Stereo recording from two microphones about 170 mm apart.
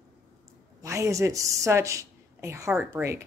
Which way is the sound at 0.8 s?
20° right (ahead or behind).